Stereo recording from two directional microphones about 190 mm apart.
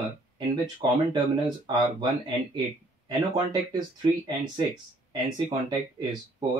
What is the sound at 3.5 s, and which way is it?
Speech, 20° right (ahead or behind).